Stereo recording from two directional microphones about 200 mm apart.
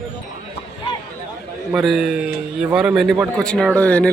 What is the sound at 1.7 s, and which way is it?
A man's voice, centre (ahead or behind).